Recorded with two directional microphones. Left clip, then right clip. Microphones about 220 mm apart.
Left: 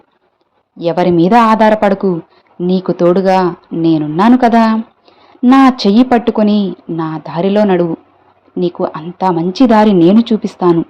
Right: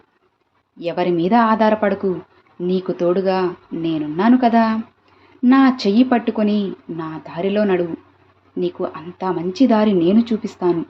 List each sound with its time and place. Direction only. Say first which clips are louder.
0.8 s speech: left 8 dB; 30° left (ahead or behind)